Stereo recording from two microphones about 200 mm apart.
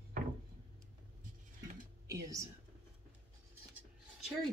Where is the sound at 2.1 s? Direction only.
15° right (ahead or behind).